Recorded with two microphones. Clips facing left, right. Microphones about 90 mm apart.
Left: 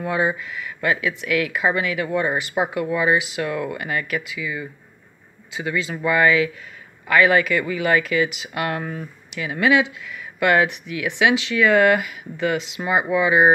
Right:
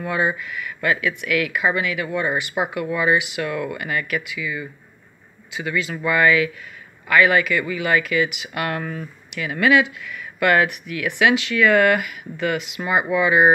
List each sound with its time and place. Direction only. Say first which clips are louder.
0.0 s speech: even; 25° left (ahead or behind)